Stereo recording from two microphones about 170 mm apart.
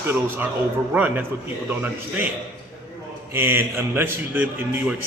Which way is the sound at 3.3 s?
15° right (ahead or behind).